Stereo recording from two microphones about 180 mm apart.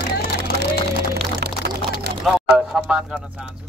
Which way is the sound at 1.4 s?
65° right (ahead or behind).